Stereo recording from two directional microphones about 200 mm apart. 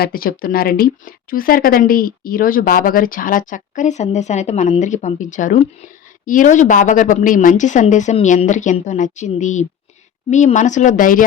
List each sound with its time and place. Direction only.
0.0 s a woman's voice: 45° left (ahead or behind)